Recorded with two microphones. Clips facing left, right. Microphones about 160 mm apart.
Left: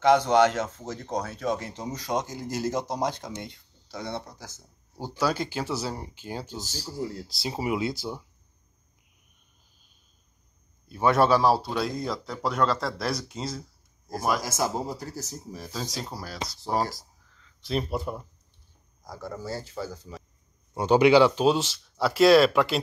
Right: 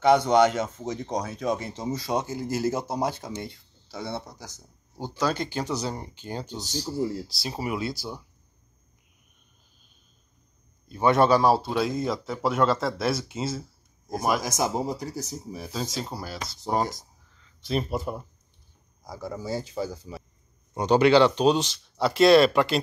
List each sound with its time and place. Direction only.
0.0 s speech: 10° right (ahead or behind)
4.9 s a man's voice: 10° left (ahead or behind)
7.2 s speech: 20° left (ahead or behind)
10.9 s a man's voice: 5° left (ahead or behind)
14.4 s a man's voice: 20° right (ahead or behind)
20.7 s a man's voice: 5° left (ahead or behind)